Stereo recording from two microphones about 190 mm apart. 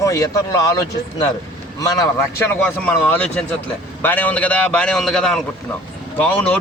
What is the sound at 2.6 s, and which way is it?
Speech, 5° left (ahead or behind).